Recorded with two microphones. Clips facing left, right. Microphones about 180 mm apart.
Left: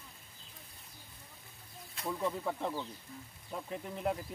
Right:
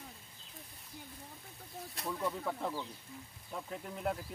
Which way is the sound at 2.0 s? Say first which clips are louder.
Left 2 dB; centre (ahead or behind).